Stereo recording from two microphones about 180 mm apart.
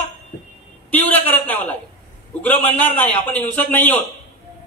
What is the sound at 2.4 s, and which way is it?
A man's voice, 10° left (ahead or behind).